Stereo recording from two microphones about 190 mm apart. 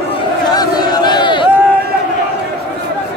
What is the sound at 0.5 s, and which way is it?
Crowd, 20° left (ahead or behind).